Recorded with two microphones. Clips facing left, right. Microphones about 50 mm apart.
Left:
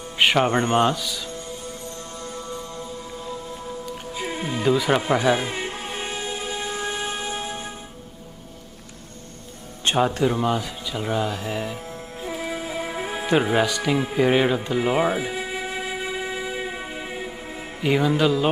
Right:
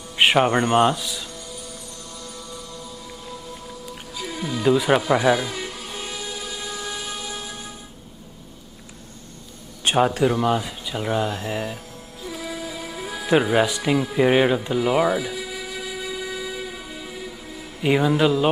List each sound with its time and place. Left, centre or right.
0.2 s music: centre
0.5 s a man's voice: right
1.3 s music: left
4.6 s speech: centre
5.3 s music: left
9.8 s speech: centre
12.2 s music: left
13.6 s speech: centre
14.8 s speech: centre
15.1 s train: left
17.8 s speech: centre